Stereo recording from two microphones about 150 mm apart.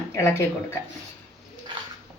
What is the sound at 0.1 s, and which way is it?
Speech, 15° left (ahead or behind).